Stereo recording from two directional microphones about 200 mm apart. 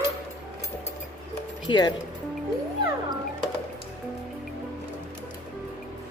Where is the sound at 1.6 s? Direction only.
20° left (ahead or behind).